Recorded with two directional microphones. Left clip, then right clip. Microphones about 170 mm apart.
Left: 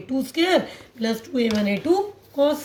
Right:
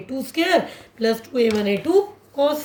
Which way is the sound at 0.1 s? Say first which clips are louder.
Right 1 dB; 50° right (ahead or behind).